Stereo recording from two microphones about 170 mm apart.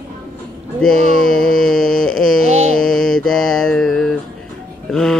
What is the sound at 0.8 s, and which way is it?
Speech, 5° left (ahead or behind).